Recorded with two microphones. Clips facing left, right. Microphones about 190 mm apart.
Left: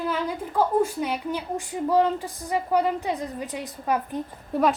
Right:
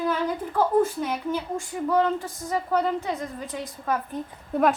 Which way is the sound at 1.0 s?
15° left (ahead or behind).